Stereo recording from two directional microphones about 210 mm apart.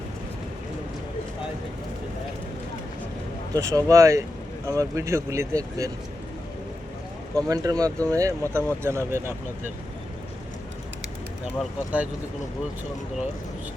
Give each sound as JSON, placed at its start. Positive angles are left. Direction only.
{"t": 3.5, "sound": "speech", "side_deg": -15}
{"t": 7.3, "sound": "speech", "side_deg": -15}